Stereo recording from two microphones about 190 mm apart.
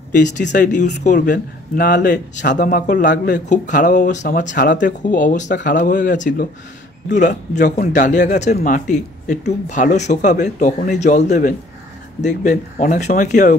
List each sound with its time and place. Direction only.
0.5 s speech: 40° left (ahead or behind)
4.6 s speech: 70° left (ahead or behind)
5.0 s speech: 40° left (ahead or behind)
7.8 s a man's voice: 60° left (ahead or behind)
8.1 s speech: 40° left (ahead or behind)